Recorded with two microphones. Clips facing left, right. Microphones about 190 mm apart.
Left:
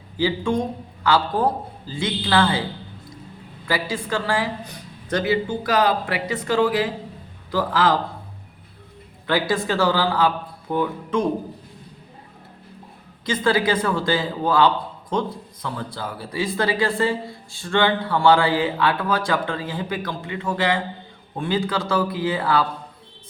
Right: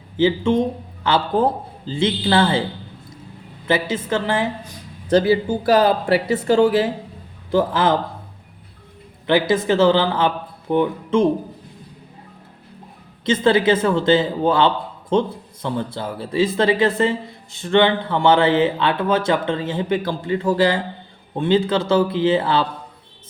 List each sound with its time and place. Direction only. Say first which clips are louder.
0.2 s a man's voice: right 5 dB; 25° right (ahead or behind)
3.7 s a man's voice: right 4 dB; 20° right (ahead or behind)
9.2 s a man's voice: right 5 dB; 20° right (ahead or behind)
13.2 s a man's voice: right 5 dB; 25° right (ahead or behind)